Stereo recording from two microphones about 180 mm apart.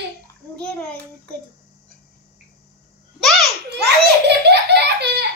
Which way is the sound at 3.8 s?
70° right (ahead or behind).